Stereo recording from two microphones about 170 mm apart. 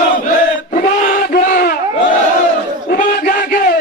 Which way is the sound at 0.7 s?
55° left (ahead or behind).